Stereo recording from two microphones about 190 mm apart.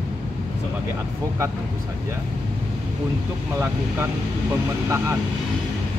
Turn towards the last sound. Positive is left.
turn(degrees=-15)  # may be behind; listen again after turning